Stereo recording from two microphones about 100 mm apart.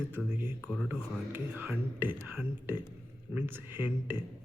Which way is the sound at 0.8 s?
20° right (ahead or behind).